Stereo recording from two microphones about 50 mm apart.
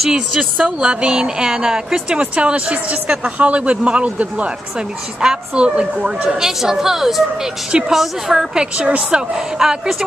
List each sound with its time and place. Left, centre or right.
0.6 s a woman's voice: right; by 8.5 s centre
8.5 s a woman's voice: right
9.3 s a woman's voice: centre